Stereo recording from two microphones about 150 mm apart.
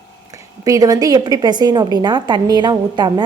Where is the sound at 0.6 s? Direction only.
25° right (ahead or behind).